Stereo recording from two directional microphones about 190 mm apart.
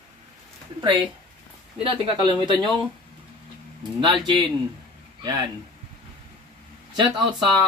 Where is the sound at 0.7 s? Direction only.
25° right (ahead or behind).